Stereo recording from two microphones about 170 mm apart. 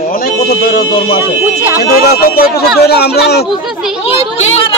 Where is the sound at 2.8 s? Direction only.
70° left (ahead or behind).